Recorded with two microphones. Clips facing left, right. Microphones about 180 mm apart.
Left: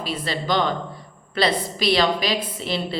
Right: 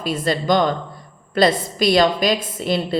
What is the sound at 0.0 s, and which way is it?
A woman's voice, 45° right (ahead or behind).